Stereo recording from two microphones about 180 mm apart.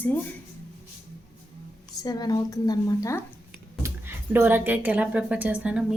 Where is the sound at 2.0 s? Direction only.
20° left (ahead or behind).